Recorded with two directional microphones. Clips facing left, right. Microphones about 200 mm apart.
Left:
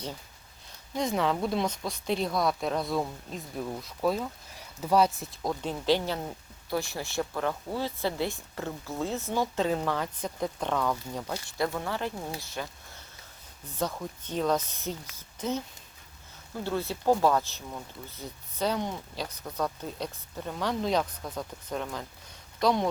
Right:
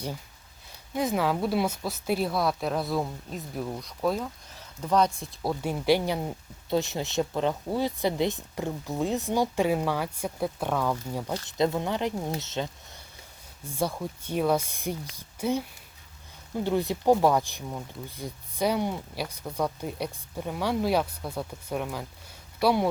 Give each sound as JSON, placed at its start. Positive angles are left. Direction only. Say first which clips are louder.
{"t": 0.9, "sound": "speech", "louder": "right 2 dB", "side_deg": -5}
{"t": 5.4, "sound": "speech", "louder": "right 3 dB", "side_deg": -10}
{"t": 11.4, "sound": "speech", "louder": "right 6 dB", "side_deg": -20}
{"t": 13.7, "sound": "speech", "louder": "right 3 dB", "side_deg": -10}